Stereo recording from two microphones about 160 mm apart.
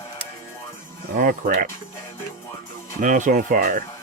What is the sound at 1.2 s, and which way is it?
Speech, 65° right (ahead or behind).